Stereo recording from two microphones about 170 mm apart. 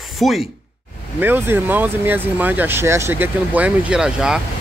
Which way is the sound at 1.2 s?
10° right (ahead or behind).